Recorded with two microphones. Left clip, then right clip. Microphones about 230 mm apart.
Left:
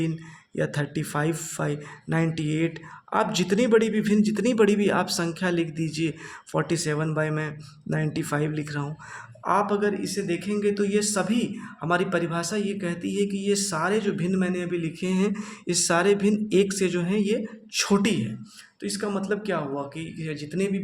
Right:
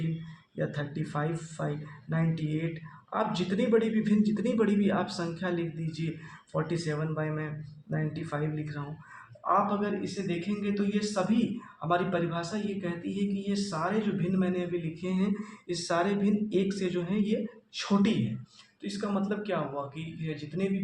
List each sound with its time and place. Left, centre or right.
0.5 s a man's voice: left